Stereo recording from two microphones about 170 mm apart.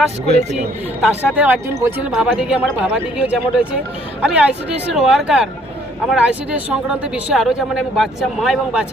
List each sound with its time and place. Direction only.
0.3 s speech: 40° right (ahead or behind)
1.4 s speech: 15° right (ahead or behind)
2.1 s speech: 5° right (ahead or behind)